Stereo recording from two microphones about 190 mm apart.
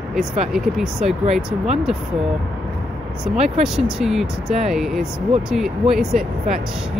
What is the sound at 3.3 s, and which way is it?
Speech, 35° right (ahead or behind).